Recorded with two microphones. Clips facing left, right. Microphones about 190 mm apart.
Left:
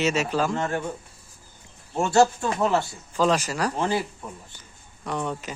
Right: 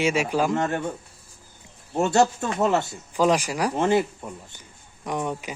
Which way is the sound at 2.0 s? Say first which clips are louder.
Left 1 dB; 20° right (ahead or behind).